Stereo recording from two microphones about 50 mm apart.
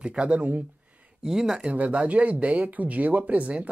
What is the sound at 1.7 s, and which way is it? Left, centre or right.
Speech, right.